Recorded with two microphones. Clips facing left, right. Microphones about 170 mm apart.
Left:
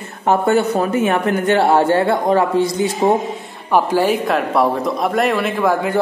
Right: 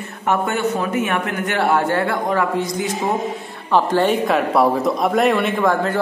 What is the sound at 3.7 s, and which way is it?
A man's voice, 10° left (ahead or behind).